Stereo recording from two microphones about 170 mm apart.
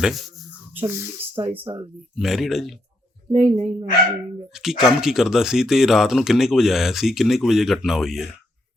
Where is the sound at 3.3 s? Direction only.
40° right (ahead or behind).